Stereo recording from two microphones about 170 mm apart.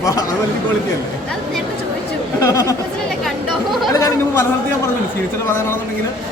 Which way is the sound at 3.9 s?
20° left (ahead or behind).